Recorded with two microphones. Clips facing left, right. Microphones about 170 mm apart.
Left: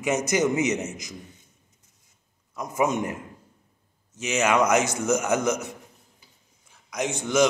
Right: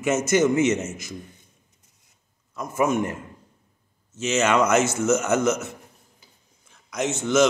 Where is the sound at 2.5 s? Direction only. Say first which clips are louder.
Right 2 dB; 15° left (ahead or behind).